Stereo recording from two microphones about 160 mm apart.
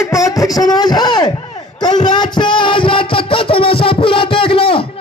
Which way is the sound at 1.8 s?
25° left (ahead or behind).